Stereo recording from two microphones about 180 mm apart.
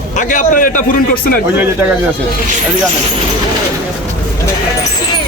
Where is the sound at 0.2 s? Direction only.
45° left (ahead or behind).